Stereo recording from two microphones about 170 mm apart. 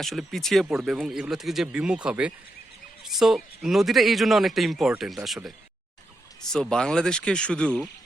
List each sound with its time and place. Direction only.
0.0 s speech: centre (ahead or behind)